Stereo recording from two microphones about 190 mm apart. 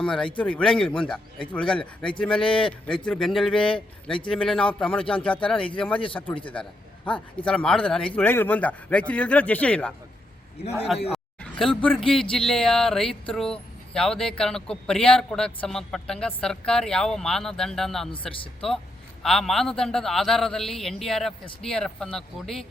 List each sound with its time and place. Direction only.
0.0 s speech: 5° left (ahead or behind)
11.1 s a sound: 5° left (ahead or behind)
11.9 s speech: centre (ahead or behind)
18.1 s speech: 25° left (ahead or behind)
18.6 s speech: 5° left (ahead or behind)